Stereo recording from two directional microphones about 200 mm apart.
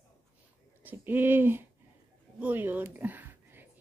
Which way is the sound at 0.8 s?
10° right (ahead or behind).